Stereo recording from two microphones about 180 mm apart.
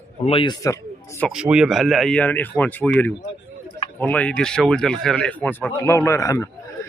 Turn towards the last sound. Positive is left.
turn(degrees=15)  # may be behind; listen again after turning